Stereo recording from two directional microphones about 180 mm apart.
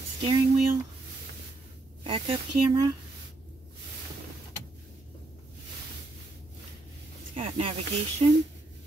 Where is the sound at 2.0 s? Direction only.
25° right (ahead or behind).